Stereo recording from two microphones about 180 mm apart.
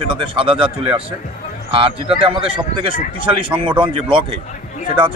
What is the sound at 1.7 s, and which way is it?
Speech, 30° right (ahead or behind).